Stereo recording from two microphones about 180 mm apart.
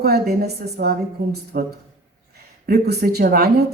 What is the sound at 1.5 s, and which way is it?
A woman's voice, 50° right (ahead or behind).